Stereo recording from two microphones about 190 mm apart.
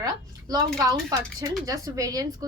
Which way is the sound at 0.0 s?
20° right (ahead or behind).